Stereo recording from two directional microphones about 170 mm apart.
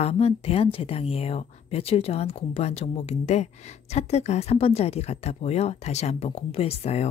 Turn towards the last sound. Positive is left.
turn(degrees=35)  # may be behind; listen again after turning